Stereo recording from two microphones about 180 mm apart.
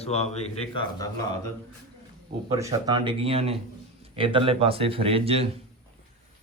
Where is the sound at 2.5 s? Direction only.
20° right (ahead or behind).